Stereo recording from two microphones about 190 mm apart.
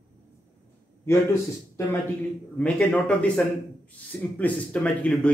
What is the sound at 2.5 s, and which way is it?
A man's voice, 5° left (ahead or behind).